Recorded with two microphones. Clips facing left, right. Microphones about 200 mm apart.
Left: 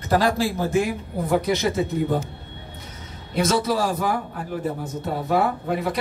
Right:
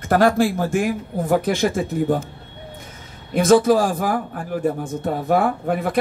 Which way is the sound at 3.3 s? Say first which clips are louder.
Right 7 dB; 50° right (ahead or behind).